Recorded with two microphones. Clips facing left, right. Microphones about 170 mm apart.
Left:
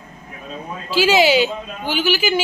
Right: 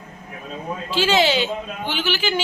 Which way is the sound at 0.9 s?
10° left (ahead or behind).